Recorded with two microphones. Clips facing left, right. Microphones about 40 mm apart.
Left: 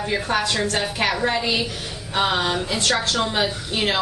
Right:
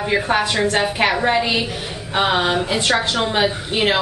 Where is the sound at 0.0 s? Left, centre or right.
Right.